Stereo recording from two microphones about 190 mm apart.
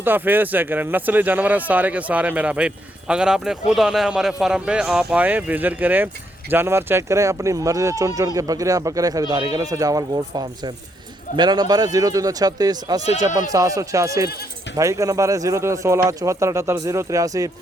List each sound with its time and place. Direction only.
0.0 s a man's voice: 10° right (ahead or behind)